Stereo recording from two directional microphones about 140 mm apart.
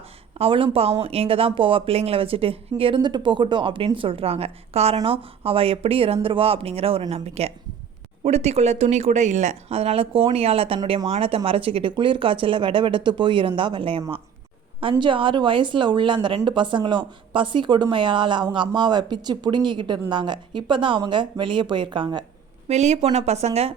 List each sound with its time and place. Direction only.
0.3 s speech: 40° right (ahead or behind)
22.7 s speech: 50° right (ahead or behind)